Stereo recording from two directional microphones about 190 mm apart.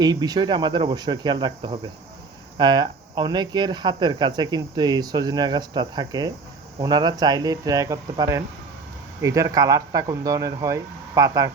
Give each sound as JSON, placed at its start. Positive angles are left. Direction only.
{"t": 0.0, "sound": "speech", "side_deg": -20}